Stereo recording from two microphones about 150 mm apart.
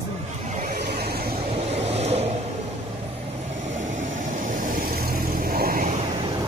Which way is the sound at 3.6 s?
55° right (ahead or behind).